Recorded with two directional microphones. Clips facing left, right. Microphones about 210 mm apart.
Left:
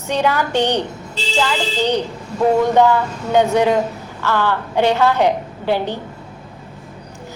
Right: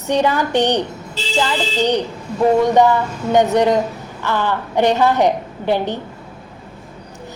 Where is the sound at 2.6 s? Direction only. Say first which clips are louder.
Even; 15° right (ahead or behind).